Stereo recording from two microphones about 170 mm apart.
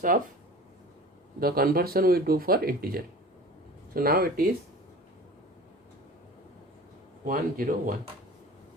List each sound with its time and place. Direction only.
0.1 s speech: 55° right (ahead or behind)
1.4 s speech: 60° right (ahead or behind)
7.3 s speech: 55° right (ahead or behind)